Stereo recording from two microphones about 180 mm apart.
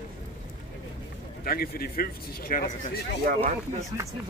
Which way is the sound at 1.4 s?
55° left (ahead or behind).